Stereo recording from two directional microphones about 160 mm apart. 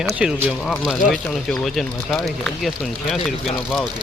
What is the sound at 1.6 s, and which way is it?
Speech, centre (ahead or behind).